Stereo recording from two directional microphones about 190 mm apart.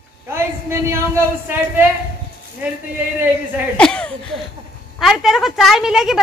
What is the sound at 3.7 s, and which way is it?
A woman's voice, 5° left (ahead or behind).